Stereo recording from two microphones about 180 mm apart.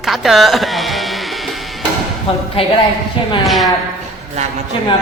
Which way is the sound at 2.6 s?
30° left (ahead or behind).